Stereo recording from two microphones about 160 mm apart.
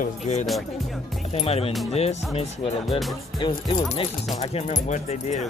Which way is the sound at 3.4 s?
25° left (ahead or behind).